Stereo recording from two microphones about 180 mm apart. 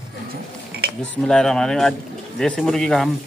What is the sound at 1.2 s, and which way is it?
Speech, 5° left (ahead or behind).